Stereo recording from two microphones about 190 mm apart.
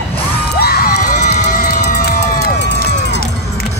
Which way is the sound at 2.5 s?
65° left (ahead or behind).